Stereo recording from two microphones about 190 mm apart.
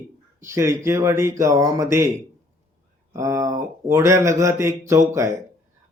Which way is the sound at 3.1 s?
15° right (ahead or behind).